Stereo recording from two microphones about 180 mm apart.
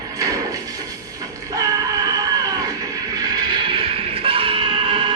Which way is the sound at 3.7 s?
30° right (ahead or behind).